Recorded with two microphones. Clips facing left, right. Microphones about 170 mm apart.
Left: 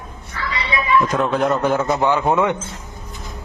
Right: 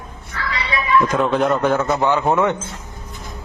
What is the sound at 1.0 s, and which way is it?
A man's voice, centre (ahead or behind).